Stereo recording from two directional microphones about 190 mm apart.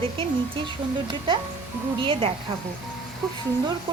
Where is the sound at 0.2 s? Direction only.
25° right (ahead or behind).